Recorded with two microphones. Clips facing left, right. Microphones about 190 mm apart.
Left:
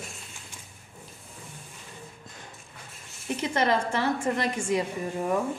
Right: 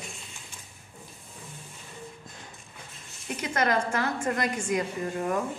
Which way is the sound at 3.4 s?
30° left (ahead or behind).